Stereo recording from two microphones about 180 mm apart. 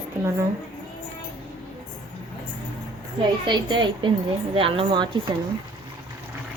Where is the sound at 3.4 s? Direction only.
25° right (ahead or behind).